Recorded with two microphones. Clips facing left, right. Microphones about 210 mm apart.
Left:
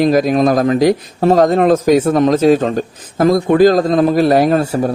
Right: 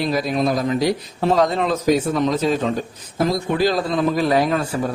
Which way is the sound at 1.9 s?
90° left.